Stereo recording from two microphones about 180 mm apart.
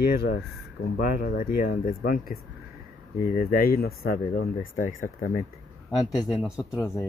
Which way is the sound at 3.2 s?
55° left (ahead or behind).